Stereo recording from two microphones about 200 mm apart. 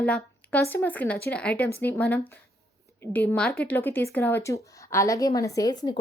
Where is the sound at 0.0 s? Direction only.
5° left (ahead or behind).